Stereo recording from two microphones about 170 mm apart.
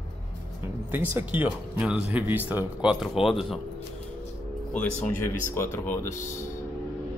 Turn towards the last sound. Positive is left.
turn(degrees=15)  # may be behind; listen again after turning